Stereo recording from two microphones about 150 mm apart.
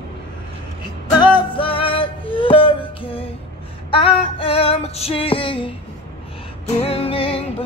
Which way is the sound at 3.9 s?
35° left (ahead or behind).